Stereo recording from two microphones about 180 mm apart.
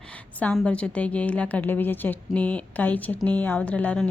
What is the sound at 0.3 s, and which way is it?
A woman's voice, 5° left (ahead or behind).